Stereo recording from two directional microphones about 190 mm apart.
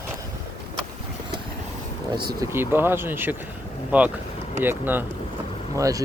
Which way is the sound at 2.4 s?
10° right (ahead or behind).